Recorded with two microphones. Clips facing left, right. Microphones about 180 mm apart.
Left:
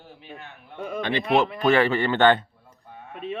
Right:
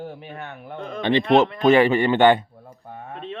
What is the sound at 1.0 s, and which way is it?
Speech, 25° right (ahead or behind).